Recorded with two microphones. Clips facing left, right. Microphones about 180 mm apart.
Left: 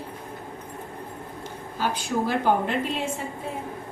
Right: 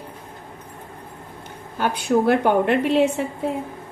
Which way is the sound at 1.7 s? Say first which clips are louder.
Right 7 dB; 60° right (ahead or behind).